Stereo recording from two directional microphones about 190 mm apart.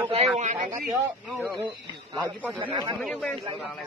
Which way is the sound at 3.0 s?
Centre (ahead or behind).